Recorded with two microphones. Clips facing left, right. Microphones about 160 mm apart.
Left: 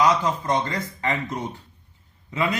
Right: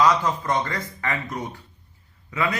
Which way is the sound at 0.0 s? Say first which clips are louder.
Even; 20° left (ahead or behind).